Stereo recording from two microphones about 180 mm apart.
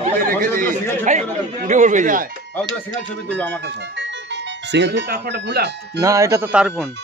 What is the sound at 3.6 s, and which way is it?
Speech, 80° right.